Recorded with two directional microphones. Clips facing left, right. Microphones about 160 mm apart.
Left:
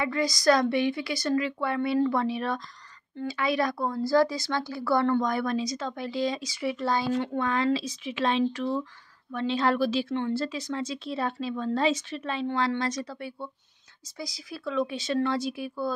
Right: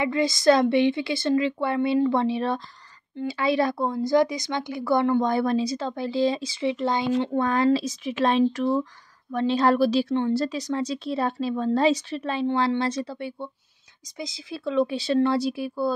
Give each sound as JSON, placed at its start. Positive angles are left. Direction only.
{"t": 0.0, "sound": "speech", "side_deg": -25}
{"t": 5.2, "sound": "speech", "side_deg": -30}
{"t": 7.3, "sound": "speech", "side_deg": -40}